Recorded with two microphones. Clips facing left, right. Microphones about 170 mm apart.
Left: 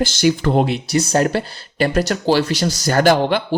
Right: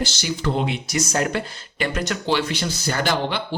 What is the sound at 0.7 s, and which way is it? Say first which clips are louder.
Speech: left 6 dB; 35° left (ahead or behind).